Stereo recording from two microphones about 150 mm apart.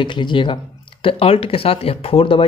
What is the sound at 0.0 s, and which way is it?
Speech, 30° left (ahead or behind).